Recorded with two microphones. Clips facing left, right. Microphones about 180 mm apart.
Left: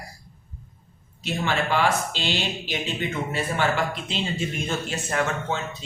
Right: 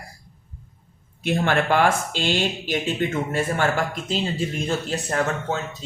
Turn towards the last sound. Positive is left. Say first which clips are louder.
# right 2 dB
turn(degrees=-40)  # may be behind; listen again after turning